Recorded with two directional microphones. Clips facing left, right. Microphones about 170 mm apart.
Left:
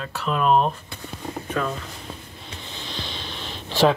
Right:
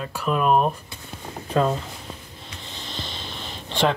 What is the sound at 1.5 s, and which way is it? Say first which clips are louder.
Speech: right 6 dB; 30° right (ahead or behind).